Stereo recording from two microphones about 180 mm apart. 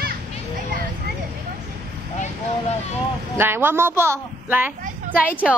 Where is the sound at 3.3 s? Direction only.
10° right (ahead or behind).